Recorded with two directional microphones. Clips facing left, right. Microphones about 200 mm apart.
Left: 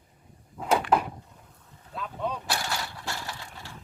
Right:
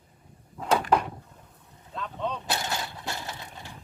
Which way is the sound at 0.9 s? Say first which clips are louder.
Even; 5° left (ahead or behind).